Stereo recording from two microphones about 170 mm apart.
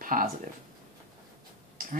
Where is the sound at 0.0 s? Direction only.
55° right (ahead or behind).